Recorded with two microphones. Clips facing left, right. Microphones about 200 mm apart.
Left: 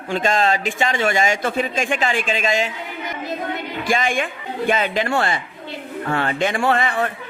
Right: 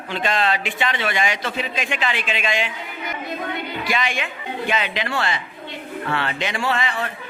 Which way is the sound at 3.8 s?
50° left (ahead or behind).